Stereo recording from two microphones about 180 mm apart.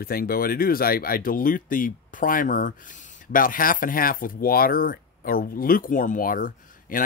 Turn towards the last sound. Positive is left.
turn(degrees=50)  # may be behind; listen again after turning